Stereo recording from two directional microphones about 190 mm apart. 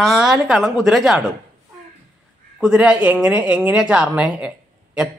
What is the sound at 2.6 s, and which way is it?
Speech, 5° right (ahead or behind).